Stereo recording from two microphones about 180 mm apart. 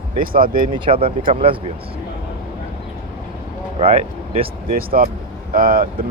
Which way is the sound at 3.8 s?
35° right (ahead or behind).